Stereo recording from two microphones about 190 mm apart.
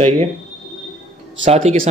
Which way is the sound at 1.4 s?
40° right (ahead or behind).